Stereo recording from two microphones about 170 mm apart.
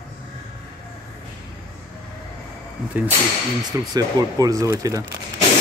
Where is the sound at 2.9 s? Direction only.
10° right (ahead or behind).